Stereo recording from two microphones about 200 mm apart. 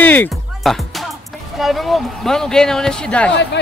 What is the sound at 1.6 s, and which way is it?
Speech, centre (ahead or behind).